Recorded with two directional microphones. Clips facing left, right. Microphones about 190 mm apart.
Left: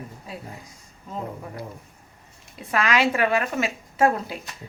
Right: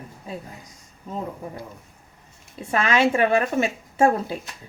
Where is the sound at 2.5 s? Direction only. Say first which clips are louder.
Right 2 dB; 25° right (ahead or behind).